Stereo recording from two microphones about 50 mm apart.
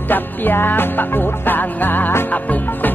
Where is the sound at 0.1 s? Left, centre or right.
Left.